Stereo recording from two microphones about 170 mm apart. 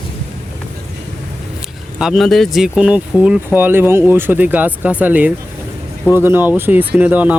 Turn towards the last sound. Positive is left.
turn(degrees=-10)  # may be behind; listen again after turning